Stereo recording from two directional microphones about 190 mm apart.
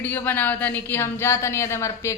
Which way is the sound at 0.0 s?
10° left (ahead or behind).